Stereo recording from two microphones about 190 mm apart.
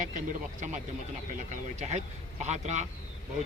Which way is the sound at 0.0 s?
40° right (ahead or behind).